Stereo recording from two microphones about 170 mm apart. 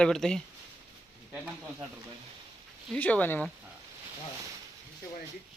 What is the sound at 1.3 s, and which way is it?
Speech, 10° right (ahead or behind).